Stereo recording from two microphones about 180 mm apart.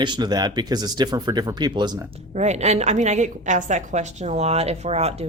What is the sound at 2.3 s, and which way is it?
A woman's voice, 40° right (ahead or behind).